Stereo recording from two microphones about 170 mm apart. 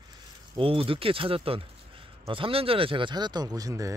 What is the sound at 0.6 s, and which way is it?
A man's voice, 30° right (ahead or behind).